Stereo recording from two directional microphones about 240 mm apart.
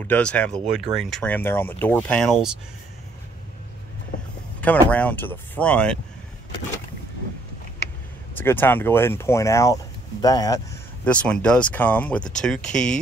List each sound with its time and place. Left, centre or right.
0.0 s speech: centre
4.8 s speech: centre
8.4 s speech: centre
11.1 s speech: centre